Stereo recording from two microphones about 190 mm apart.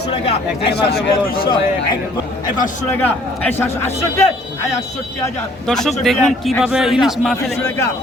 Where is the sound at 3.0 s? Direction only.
10° left (ahead or behind).